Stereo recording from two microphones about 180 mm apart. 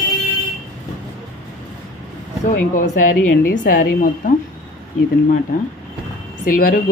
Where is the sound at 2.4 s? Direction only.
45° left (ahead or behind).